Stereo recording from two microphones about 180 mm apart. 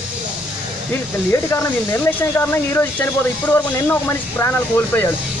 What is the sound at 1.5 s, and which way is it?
Speech, 15° left (ahead or behind).